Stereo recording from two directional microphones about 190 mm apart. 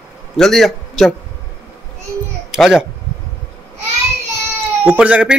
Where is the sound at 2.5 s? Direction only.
Centre (ahead or behind).